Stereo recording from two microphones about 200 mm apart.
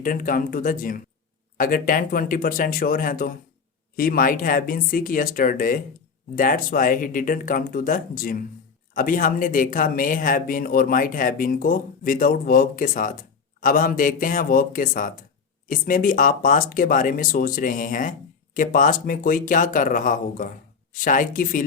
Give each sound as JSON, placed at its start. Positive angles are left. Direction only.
{"t": 0.0, "sound": "a woman's voice", "side_deg": 45}